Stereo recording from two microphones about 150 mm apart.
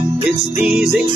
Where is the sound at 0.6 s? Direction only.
5° right (ahead or behind).